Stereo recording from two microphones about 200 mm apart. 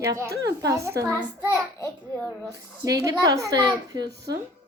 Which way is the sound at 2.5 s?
15° right (ahead or behind).